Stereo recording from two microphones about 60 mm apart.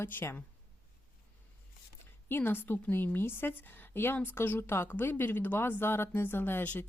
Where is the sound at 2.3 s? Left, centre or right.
Left.